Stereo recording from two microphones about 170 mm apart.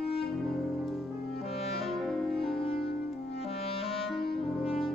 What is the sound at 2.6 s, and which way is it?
Music, 35° left (ahead or behind).